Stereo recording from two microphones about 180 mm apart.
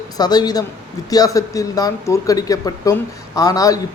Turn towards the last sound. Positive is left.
turn(degrees=20)  # may be behind; listen again after turning